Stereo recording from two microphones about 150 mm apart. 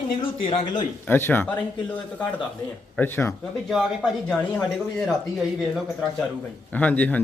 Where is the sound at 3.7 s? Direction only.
Centre (ahead or behind).